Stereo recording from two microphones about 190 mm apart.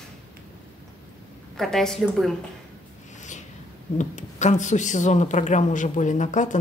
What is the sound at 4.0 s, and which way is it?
A woman's voice, 40° left (ahead or behind).